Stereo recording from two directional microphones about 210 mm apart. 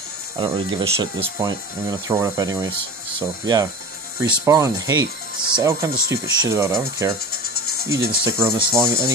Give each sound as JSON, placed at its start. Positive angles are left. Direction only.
{"t": 0.4, "sound": "speech", "side_deg": -25}
{"t": 7.5, "sound": "music", "side_deg": 90}
{"t": 7.9, "sound": "speech", "side_deg": -15}